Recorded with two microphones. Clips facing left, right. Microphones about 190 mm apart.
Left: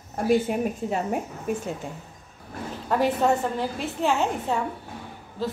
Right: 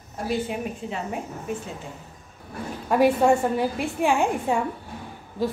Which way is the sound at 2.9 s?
10° right (ahead or behind).